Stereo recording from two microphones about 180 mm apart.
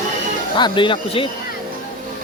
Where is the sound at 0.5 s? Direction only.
25° left (ahead or behind).